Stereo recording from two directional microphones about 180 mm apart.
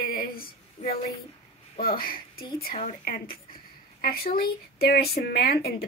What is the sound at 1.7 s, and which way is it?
A woman's voice, 55° left (ahead or behind).